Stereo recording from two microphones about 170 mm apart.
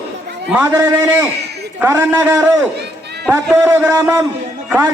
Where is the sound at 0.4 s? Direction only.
10° right (ahead or behind).